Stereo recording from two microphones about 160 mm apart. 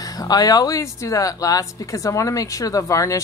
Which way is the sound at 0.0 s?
20° left (ahead or behind).